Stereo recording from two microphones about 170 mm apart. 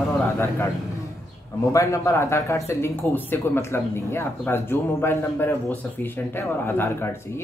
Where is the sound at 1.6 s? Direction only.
20° left (ahead or behind).